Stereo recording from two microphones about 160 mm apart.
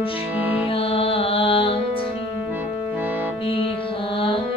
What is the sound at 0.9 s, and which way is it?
Music, 35° left (ahead or behind).